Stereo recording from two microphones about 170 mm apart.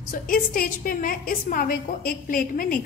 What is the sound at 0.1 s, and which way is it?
A woman's voice, 55° left (ahead or behind).